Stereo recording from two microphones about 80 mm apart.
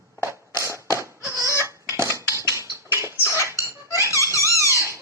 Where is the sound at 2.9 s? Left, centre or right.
Right.